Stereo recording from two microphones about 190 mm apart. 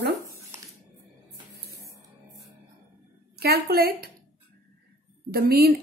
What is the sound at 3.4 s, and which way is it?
Speech, 55° right (ahead or behind).